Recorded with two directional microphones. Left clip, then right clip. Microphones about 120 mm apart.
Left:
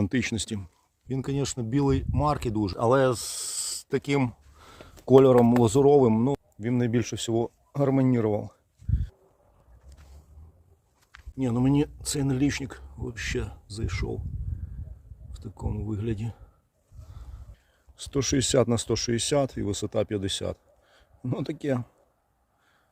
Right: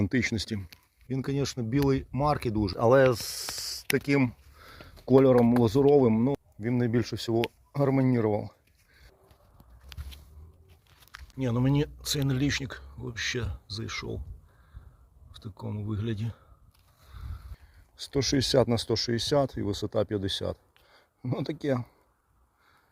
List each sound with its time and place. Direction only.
0.0 s speech: 10° left (ahead or behind)
2.7 s speech: 15° right (ahead or behind)
4.2 s a sound: 20° left (ahead or behind)
5.5 s speech: 25° left (ahead or behind)
11.4 s speech: 20° left (ahead or behind)
15.6 s speech: 30° left (ahead or behind)
17.9 s speech: 20° left (ahead or behind)
21.2 s speech: 80° left
21.6 s speech: 30° left (ahead or behind)